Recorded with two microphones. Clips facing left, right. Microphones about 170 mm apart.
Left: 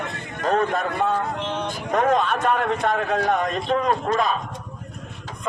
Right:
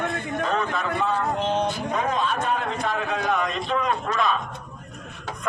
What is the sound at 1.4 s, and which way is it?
Speech, 40° right (ahead or behind).